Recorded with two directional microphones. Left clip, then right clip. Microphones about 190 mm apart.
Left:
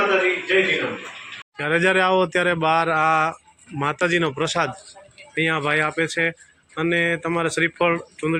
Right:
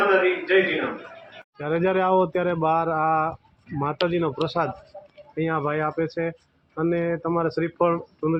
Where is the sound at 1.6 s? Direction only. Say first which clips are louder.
Left 4 dB; 5° left (ahead or behind).